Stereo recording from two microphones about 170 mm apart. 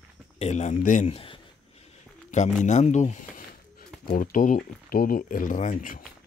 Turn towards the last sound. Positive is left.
turn(degrees=50)  # may be behind; listen again after turning